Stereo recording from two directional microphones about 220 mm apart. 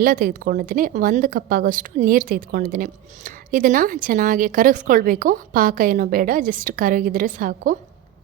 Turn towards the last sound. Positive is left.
turn(degrees=-40)  # may be behind; listen again after turning